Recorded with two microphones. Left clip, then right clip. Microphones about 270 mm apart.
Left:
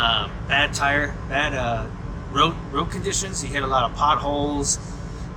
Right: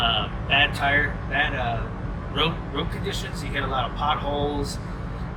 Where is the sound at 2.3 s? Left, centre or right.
Left.